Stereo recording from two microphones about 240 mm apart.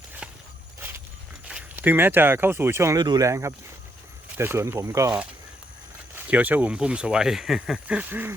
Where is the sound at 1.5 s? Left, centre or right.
Centre.